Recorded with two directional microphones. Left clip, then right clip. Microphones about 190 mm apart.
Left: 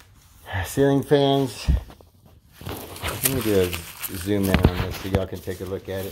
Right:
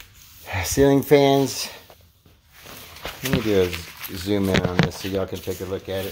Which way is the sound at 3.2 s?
60° left (ahead or behind).